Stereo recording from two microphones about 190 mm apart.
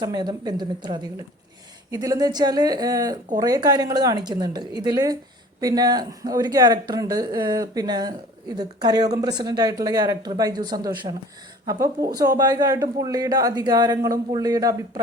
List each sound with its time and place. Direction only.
0.0 s a woman's voice: 20° right (ahead or behind)